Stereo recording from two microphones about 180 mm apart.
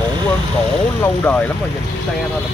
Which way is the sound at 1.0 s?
10° left (ahead or behind).